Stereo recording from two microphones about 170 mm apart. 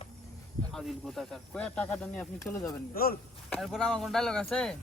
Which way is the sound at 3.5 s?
Centre (ahead or behind).